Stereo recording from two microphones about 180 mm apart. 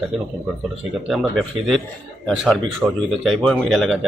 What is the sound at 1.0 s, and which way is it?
Speech, centre (ahead or behind).